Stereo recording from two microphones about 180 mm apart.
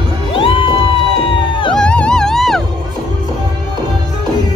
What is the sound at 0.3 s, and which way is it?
Music, 30° left (ahead or behind).